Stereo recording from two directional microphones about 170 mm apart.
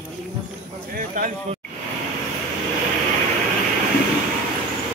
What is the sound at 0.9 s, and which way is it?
Speech, 50° right (ahead or behind).